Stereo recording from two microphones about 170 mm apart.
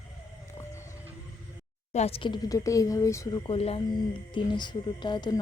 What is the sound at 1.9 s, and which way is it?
Speech, 40° left (ahead or behind).